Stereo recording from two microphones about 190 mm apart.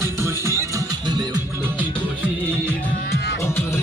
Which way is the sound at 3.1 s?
55° left (ahead or behind).